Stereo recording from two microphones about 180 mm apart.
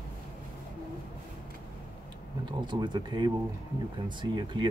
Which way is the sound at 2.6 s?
25° right (ahead or behind).